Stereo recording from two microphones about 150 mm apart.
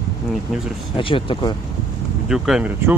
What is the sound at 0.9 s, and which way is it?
Speech, 35° left (ahead or behind).